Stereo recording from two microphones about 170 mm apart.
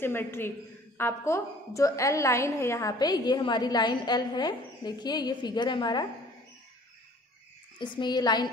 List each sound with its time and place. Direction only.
0.0 s a woman's voice: 15° left (ahead or behind)
7.8 s a woman's voice: 25° left (ahead or behind)